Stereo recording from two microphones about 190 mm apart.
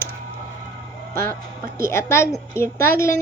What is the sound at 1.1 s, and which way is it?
Speech, 50° right (ahead or behind).